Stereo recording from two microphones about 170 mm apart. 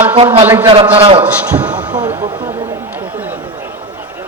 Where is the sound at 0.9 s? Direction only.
35° right (ahead or behind).